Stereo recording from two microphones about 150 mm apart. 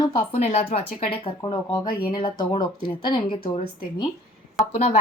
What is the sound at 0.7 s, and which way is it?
Speech, 40° left (ahead or behind).